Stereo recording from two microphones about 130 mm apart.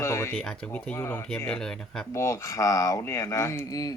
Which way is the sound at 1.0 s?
20° left (ahead or behind).